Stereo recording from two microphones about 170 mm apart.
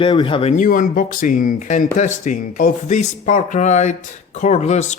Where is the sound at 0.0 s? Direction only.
30° left (ahead or behind).